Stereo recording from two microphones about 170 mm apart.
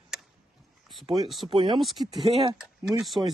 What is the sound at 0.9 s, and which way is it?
Speech, centre (ahead or behind).